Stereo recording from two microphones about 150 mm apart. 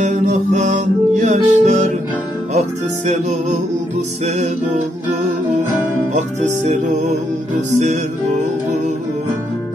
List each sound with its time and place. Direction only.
0.0 s music: 55° right (ahead or behind)
3.1 s music: 55° right (ahead or behind)
6.1 s music: 55° right (ahead or behind)